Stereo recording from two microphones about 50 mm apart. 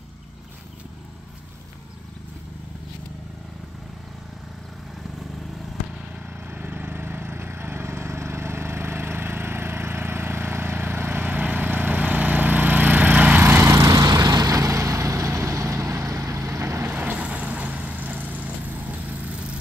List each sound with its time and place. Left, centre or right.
6.5 s a sound: right
14.4 s vehicle: right
16.8 s vehicle: right